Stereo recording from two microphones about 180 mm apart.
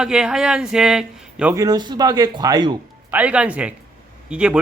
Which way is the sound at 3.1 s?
10° right (ahead or behind).